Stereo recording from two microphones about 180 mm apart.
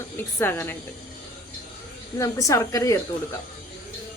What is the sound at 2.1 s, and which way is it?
Speech, 15° left (ahead or behind).